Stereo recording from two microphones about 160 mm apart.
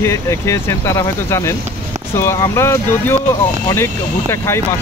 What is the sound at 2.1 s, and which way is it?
Speech, 15° left (ahead or behind).